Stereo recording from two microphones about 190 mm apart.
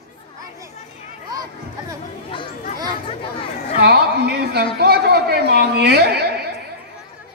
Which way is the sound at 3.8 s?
60° right (ahead or behind).